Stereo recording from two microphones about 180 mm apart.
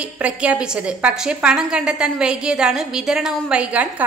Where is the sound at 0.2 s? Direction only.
5° right (ahead or behind).